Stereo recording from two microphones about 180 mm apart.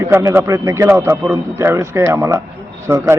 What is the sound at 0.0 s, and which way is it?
A man's voice, 15° right (ahead or behind).